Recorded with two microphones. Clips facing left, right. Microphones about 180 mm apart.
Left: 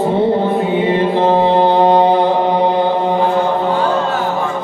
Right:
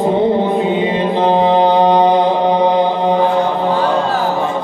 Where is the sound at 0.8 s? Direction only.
15° right (ahead or behind).